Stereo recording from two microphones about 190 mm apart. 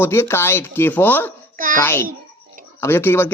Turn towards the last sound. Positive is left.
turn(degrees=10)  # may be behind; listen again after turning